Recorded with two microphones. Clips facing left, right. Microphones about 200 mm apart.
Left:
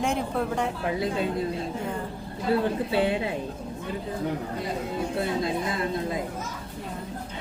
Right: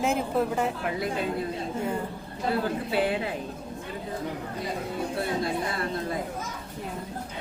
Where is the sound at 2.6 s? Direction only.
25° left (ahead or behind).